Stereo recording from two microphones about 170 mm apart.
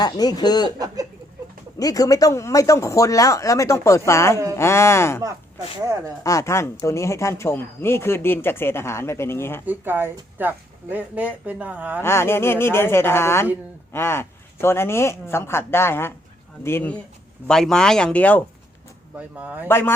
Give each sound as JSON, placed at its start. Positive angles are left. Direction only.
{"t": 0.0, "sound": "speech", "side_deg": 25}
{"t": 1.8, "sound": "speech", "side_deg": 20}
{"t": 6.2, "sound": "speech", "side_deg": 15}
{"t": 9.6, "sound": "speech", "side_deg": -10}
{"t": 12.0, "sound": "speech", "side_deg": 15}
{"t": 19.1, "sound": "speech", "side_deg": -10}
{"t": 19.6, "sound": "speech", "side_deg": 15}